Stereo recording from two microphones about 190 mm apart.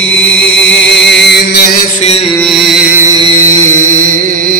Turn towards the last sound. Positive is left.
turn(degrees=-35)  # may be behind; listen again after turning